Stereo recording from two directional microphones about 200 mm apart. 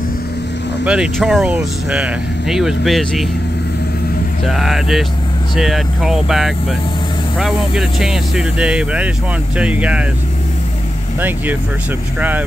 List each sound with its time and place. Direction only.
0.8 s speech: centre (ahead or behind)
4.5 s speech: centre (ahead or behind)
11.1 s speech: 10° right (ahead or behind)